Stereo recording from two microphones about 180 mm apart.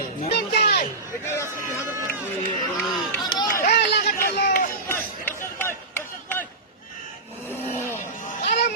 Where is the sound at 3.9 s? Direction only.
55° left (ahead or behind).